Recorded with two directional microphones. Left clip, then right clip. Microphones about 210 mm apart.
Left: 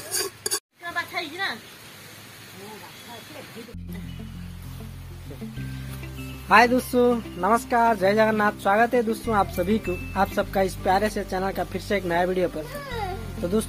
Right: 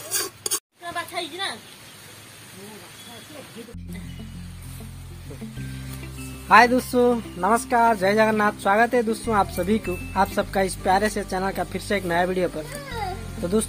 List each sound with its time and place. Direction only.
0.9 s a sound: 60° right (ahead or behind)
6.5 s speech: 15° right (ahead or behind)
12.9 s music: centre (ahead or behind)